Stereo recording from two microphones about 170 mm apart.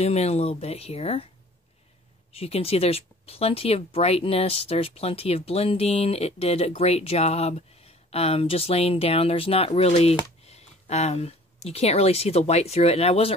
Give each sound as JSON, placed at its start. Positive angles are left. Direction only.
{"t": 0.0, "sound": "speech", "side_deg": 40}
{"t": 2.3, "sound": "speech", "side_deg": 35}